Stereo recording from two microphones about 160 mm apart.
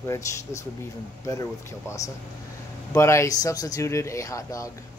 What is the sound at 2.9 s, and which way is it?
Speech, 20° left (ahead or behind).